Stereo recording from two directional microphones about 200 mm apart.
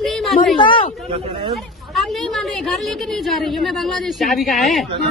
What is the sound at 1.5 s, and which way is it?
A woman's voice, centre (ahead or behind).